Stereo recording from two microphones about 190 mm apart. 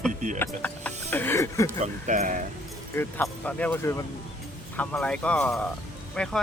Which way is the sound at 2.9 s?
10° left (ahead or behind).